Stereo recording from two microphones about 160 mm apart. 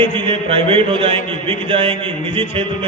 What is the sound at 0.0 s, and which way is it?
A man's voice, 35° right (ahead or behind).